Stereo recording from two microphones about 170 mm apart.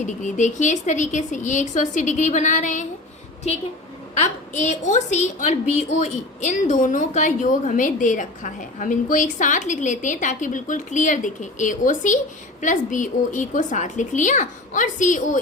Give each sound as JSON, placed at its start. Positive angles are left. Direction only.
{"t": 0.0, "sound": "a woman's voice", "side_deg": 45}